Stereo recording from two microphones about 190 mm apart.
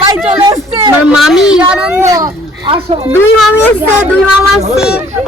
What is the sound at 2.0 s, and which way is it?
Speech, 15° right (ahead or behind).